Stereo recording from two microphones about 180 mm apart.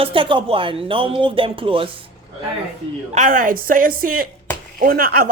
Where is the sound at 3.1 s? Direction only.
45° right (ahead or behind).